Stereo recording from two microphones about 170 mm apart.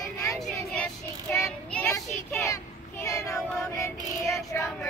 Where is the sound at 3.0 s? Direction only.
20° left (ahead or behind).